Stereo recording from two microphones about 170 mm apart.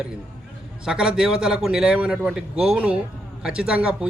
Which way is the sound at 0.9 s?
5° right (ahead or behind).